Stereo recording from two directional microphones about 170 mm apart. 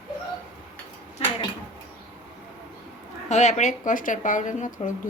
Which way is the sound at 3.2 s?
45° left (ahead or behind).